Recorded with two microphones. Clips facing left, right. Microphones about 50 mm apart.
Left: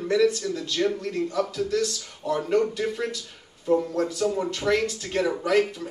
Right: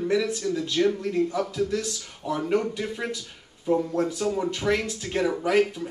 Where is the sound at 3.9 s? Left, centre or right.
Centre.